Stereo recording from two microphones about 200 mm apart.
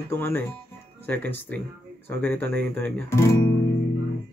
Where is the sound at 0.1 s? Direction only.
10° left (ahead or behind).